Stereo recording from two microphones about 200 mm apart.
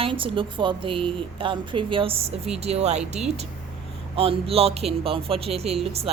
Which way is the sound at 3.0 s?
5° right (ahead or behind).